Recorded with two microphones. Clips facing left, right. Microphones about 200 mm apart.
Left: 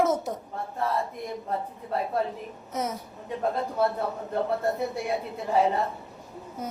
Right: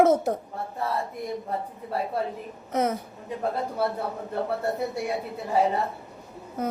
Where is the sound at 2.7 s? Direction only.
60° right (ahead or behind).